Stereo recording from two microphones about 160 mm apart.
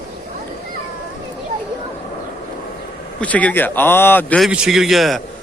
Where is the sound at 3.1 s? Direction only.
10° left (ahead or behind).